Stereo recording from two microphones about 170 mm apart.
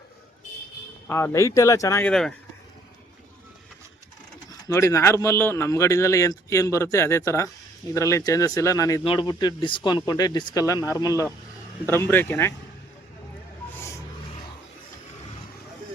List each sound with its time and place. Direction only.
1.0 s speech: 15° left (ahead or behind)
4.6 s speech: 15° left (ahead or behind)
13.7 s vehicle: 15° left (ahead or behind)